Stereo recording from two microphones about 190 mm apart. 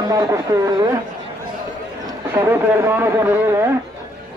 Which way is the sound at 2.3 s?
10° right (ahead or behind).